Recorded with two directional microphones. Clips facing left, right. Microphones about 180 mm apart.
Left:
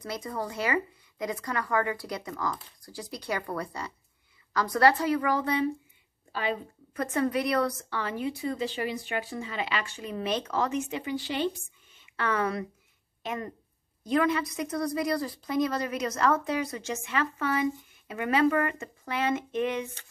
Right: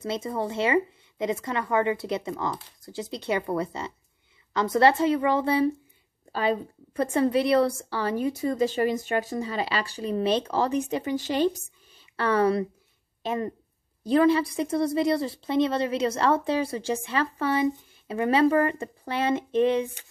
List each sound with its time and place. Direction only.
0.0 s a woman's voice: 25° right (ahead or behind)